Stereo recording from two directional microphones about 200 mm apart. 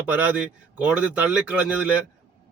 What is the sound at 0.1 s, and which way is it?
Speech, 5° right (ahead or behind).